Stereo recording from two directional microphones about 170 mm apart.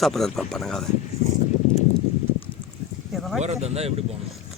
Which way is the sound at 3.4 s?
40° right (ahead or behind).